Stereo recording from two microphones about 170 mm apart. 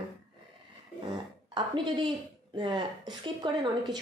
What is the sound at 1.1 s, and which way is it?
A woman's voice, 25° right (ahead or behind).